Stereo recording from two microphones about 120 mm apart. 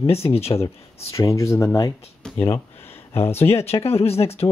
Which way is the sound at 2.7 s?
20° left (ahead or behind).